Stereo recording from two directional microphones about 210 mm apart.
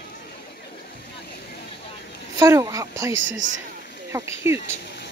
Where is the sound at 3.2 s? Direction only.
65° right (ahead or behind).